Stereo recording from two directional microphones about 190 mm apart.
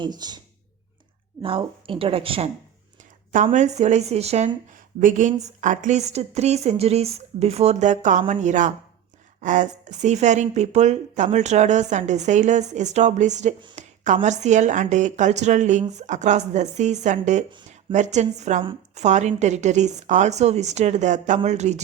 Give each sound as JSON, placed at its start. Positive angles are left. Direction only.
{"t": 0.0, "sound": "a woman's voice", "side_deg": -20}
{"t": 3.3, "sound": "a woman's voice", "side_deg": -40}